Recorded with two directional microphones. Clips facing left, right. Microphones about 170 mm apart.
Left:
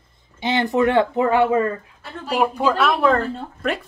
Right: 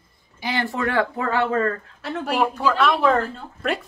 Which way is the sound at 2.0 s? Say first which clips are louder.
Right 7 dB; 85° right.